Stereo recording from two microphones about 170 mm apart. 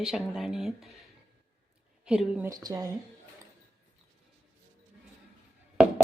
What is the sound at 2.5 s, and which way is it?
Speech, 20° right (ahead or behind).